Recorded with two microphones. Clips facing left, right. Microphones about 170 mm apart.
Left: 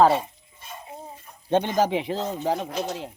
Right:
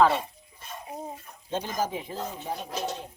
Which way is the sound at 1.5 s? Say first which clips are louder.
Left 8 dB; 70° left (ahead or behind).